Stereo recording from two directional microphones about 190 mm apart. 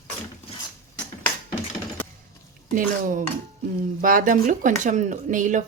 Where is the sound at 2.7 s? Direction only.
45° right (ahead or behind).